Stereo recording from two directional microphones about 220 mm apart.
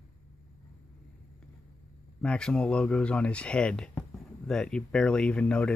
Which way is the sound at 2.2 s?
5° left (ahead or behind).